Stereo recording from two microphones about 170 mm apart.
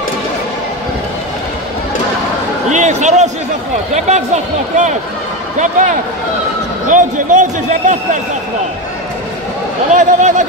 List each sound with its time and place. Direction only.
2.7 s a man's voice: 45° right (ahead or behind)
9.8 s a man's voice: 45° right (ahead or behind)